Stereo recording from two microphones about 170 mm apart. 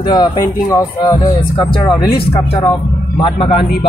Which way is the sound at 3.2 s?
30° left (ahead or behind).